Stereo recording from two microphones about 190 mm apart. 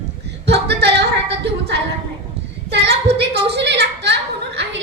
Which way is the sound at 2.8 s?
60° right (ahead or behind).